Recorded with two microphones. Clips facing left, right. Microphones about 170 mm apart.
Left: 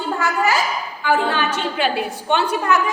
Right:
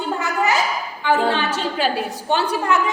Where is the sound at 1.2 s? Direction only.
30° right (ahead or behind).